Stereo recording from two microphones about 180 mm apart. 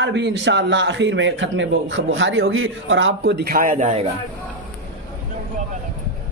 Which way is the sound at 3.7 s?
30° right (ahead or behind).